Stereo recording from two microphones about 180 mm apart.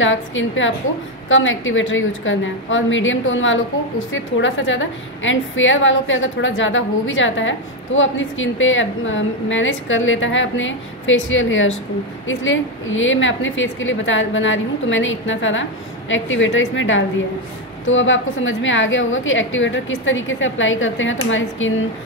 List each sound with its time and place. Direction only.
0.0 s a woman's voice: 90° left